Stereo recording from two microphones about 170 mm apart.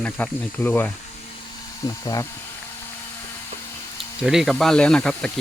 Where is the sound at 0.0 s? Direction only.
10° left (ahead or behind).